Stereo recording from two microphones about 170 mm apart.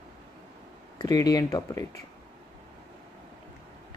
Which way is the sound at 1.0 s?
20° left (ahead or behind).